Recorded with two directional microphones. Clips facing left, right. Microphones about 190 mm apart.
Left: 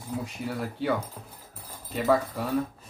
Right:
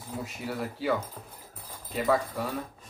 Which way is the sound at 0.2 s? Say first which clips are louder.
Right 2 dB; centre (ahead or behind).